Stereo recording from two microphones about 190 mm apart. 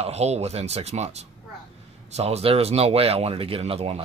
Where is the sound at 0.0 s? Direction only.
35° right (ahead or behind).